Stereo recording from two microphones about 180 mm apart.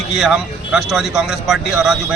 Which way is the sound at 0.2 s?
5° right (ahead or behind).